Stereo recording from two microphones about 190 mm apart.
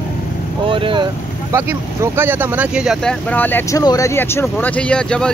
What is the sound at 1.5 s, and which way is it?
Speech, 15° right (ahead or behind).